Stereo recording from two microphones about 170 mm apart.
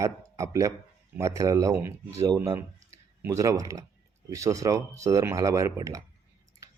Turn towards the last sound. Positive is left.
turn(degrees=-20)  # may be behind; listen again after turning